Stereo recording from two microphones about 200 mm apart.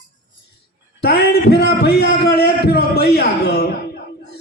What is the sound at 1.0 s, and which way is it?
A man's voice, 55° left (ahead or behind).